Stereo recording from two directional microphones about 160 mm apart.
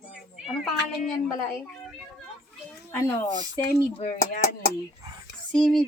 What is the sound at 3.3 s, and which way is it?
Speech, 20° right (ahead or behind).